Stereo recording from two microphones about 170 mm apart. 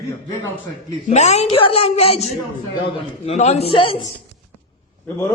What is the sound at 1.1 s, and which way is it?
A man's voice, 40° left (ahead or behind).